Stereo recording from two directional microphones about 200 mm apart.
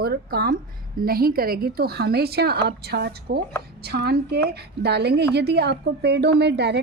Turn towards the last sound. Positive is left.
turn(degrees=-60)  # may be behind; listen again after turning